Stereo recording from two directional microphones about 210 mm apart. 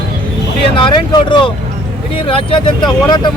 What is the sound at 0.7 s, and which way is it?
Speech, 20° left (ahead or behind).